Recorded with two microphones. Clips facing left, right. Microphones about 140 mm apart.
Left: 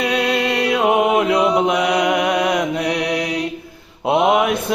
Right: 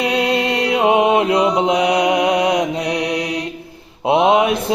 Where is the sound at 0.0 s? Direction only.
20° right (ahead or behind).